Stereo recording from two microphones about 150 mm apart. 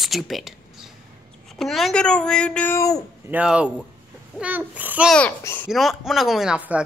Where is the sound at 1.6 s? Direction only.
Centre (ahead or behind).